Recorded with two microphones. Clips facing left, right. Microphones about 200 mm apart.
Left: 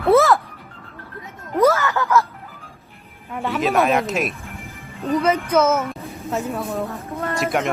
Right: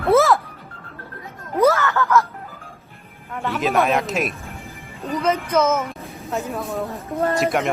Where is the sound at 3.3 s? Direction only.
Centre (ahead or behind).